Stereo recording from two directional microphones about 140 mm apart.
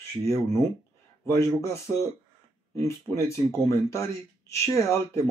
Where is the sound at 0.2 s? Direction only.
20° left (ahead or behind).